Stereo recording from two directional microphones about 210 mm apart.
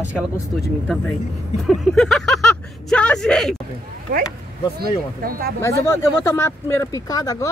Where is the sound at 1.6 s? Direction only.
Centre (ahead or behind).